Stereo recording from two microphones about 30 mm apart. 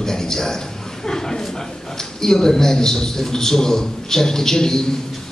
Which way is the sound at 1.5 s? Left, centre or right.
Centre.